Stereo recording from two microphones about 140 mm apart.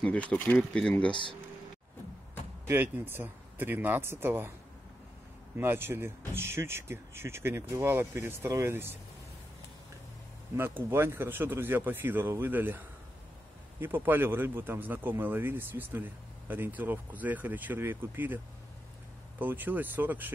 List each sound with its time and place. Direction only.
0.0 s speech: 10° left (ahead or behind)
2.7 s a man's voice: 15° right (ahead or behind)
5.6 s a man's voice: 15° right (ahead or behind)
10.9 s a man's voice: 15° right (ahead or behind)
19.4 s a man's voice: 15° right (ahead or behind)